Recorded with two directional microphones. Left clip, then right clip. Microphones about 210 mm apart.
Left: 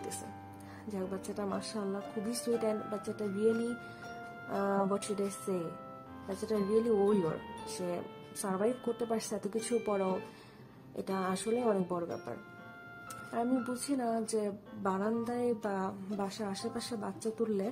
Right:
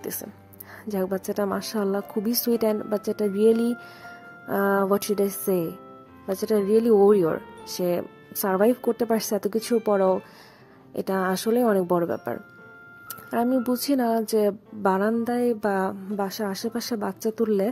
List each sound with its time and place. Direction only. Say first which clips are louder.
0.8 s a woman's voice: right 13 dB; 40° right (ahead or behind)